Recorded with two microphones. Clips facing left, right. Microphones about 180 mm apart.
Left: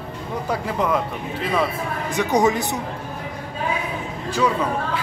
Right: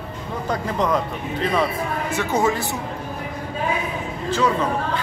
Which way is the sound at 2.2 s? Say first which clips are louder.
Left 3 dB; 15° left (ahead or behind).